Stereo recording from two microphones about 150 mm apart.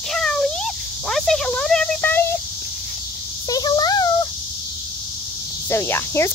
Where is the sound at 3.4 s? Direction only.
25° left (ahead or behind).